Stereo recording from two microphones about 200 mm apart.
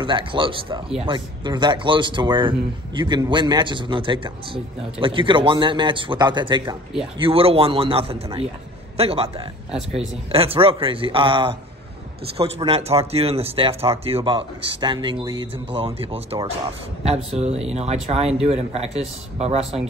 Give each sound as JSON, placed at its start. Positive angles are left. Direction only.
{"t": 0.0, "sound": "a man's voice", "side_deg": -25}
{"t": 19.6, "sound": "speech", "side_deg": 0}